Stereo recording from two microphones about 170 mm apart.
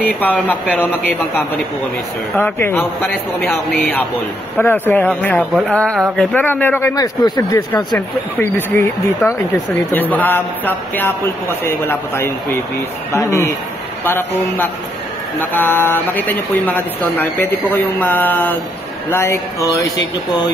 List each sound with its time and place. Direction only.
0.0 s speech: 10° left (ahead or behind)
2.3 s speech: 15° left (ahead or behind)
8.4 s speech: 10° left (ahead or behind)